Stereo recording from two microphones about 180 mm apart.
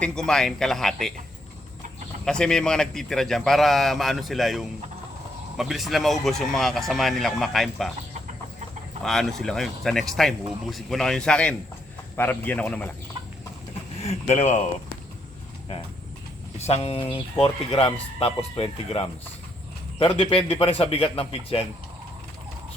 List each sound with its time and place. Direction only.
0.0 s a man's voice: 5° left (ahead or behind)
2.2 s a man's voice: 5° left (ahead or behind)
9.0 s a man's voice: centre (ahead or behind)
14.1 s a man's voice: 35° left (ahead or behind)
16.6 s a man's voice: 35° left (ahead or behind)